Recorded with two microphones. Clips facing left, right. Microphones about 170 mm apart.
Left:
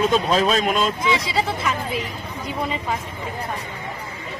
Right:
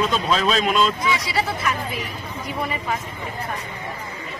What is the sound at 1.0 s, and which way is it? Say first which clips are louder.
Speech: left 2 dB; 25° left (ahead or behind).